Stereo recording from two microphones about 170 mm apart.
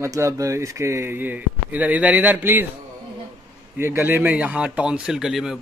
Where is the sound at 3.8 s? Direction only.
15° right (ahead or behind).